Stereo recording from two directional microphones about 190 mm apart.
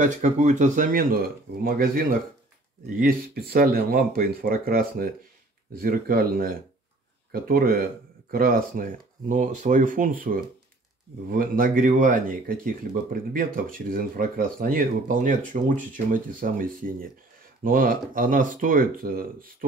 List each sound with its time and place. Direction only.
0.0 s speech: 40° right (ahead or behind)